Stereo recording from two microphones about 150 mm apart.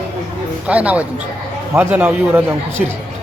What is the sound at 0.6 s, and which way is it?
A man's voice, 10° right (ahead or behind).